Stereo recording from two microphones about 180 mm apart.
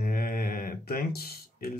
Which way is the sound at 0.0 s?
55° left (ahead or behind).